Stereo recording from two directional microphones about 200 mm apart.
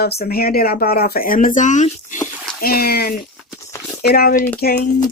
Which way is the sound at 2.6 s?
50° left (ahead or behind).